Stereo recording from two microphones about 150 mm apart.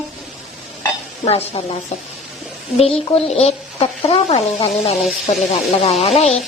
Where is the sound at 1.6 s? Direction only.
35° left (ahead or behind).